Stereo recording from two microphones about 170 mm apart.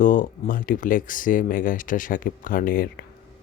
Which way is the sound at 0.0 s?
50° left (ahead or behind).